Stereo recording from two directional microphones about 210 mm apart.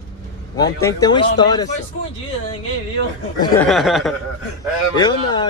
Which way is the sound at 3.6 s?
Centre (ahead or behind).